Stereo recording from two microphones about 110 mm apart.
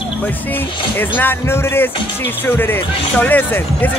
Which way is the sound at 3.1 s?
15° left (ahead or behind).